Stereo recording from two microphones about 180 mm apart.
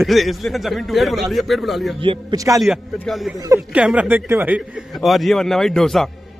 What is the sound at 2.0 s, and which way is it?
Speech, 25° right (ahead or behind).